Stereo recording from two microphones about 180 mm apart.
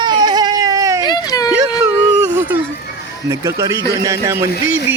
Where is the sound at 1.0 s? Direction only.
20° left (ahead or behind).